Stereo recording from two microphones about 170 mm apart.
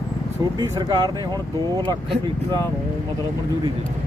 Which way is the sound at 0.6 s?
25° right (ahead or behind).